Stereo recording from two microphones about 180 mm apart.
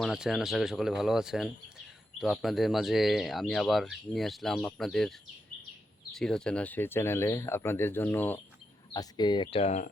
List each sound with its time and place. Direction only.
0.0 s speech: centre (ahead or behind)
8.9 s speech: 25° left (ahead or behind); by 9.9 s 40° left (ahead or behind)